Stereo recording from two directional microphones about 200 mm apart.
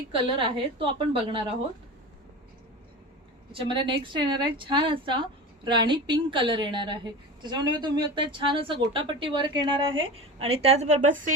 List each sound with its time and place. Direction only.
0.3 s a woman's voice: 25° right (ahead or behind)
3.5 s a woman's voice: 25° right (ahead or behind); by 11.3 s 40° right (ahead or behind)